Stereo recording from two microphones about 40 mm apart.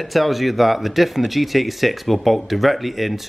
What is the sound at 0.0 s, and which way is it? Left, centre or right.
Speech, centre.